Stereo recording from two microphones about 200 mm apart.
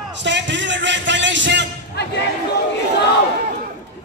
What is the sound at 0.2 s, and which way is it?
A man's voice, 60° right (ahead or behind).